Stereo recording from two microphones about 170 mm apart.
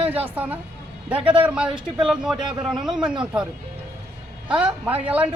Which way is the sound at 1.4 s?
5° right (ahead or behind).